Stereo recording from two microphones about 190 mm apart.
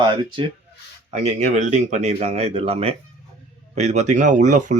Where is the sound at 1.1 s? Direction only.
35° right (ahead or behind).